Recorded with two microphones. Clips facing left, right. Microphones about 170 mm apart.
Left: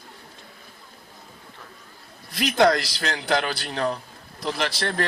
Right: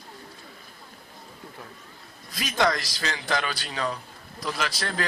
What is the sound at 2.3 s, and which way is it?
A man's voice, 65° left (ahead or behind).